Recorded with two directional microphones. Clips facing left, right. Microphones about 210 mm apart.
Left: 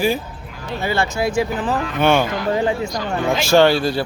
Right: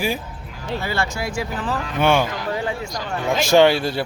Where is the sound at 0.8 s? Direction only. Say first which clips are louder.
Left 7 dB; 20° left (ahead or behind).